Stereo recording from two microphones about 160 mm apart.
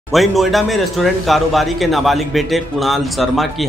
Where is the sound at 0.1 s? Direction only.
Centre (ahead or behind).